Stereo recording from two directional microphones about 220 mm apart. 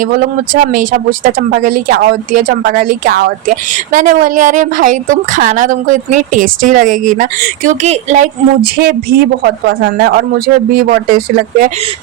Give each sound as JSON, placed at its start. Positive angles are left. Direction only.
{"t": 0.0, "sound": "a woman's voice", "side_deg": -40}
{"t": 3.9, "sound": "a woman's voice", "side_deg": -35}